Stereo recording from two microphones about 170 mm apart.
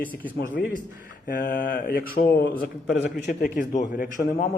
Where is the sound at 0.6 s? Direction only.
65° left (ahead or behind).